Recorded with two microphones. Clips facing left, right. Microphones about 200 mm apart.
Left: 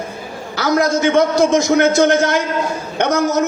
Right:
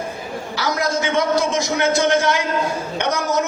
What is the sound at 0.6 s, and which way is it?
Speech, 50° left (ahead or behind).